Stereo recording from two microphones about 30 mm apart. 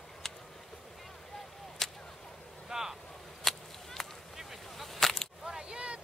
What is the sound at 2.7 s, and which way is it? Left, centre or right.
Boat, centre.